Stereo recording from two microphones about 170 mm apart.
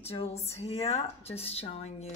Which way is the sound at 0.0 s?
35° left (ahead or behind).